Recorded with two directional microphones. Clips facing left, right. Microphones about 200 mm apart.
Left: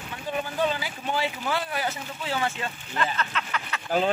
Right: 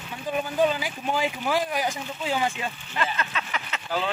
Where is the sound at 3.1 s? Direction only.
15° right (ahead or behind).